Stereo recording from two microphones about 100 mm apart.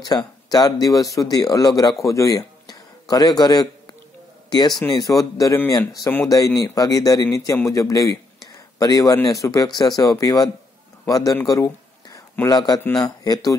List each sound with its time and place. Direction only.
0.0 s speech: 40° left (ahead or behind)
11.4 s a sound: 35° left (ahead or behind)
12.4 s a man's voice: 45° left (ahead or behind)